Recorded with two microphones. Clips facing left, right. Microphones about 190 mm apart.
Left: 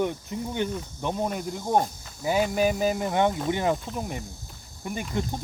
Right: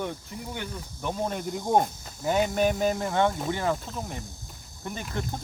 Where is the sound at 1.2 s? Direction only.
Centre (ahead or behind).